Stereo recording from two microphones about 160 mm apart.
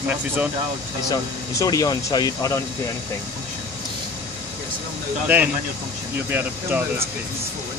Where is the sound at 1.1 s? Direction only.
20° left (ahead or behind).